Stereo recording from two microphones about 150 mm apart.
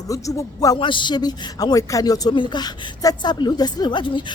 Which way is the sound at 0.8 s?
35° left (ahead or behind).